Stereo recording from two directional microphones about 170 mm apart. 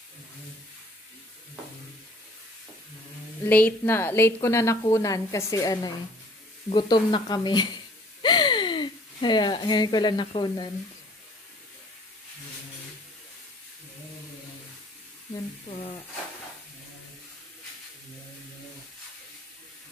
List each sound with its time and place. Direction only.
3.4 s a woman's voice: 10° left (ahead or behind); by 10.7 s 25° left (ahead or behind)
15.7 s speech: 35° left (ahead or behind)